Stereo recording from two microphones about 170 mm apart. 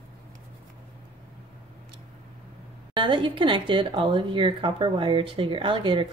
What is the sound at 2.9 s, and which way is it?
Speech, 30° right (ahead or behind).